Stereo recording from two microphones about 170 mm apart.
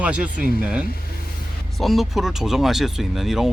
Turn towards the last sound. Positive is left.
turn(degrees=0)  # may be behind; listen again after turning